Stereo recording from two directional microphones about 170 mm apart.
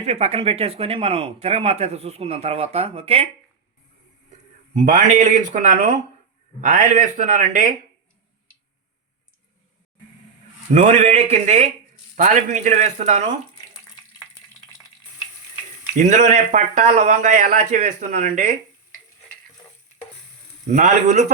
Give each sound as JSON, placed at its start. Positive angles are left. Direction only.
{"t": 0.0, "sound": "speech", "side_deg": -40}
{"t": 4.3, "sound": "speech", "side_deg": -45}
{"t": 10.7, "sound": "speech", "side_deg": -45}
{"t": 16.0, "sound": "speech", "side_deg": -45}
{"t": 20.7, "sound": "speech", "side_deg": -45}